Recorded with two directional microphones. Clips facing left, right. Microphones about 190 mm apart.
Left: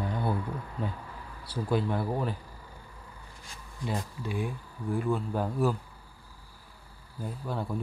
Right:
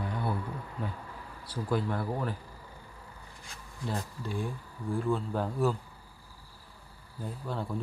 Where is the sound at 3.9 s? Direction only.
10° left (ahead or behind).